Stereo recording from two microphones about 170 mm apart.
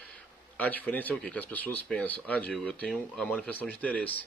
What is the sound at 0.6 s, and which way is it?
Speech, 10° left (ahead or behind).